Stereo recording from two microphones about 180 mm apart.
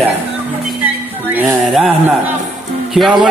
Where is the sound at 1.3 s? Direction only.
10° right (ahead or behind).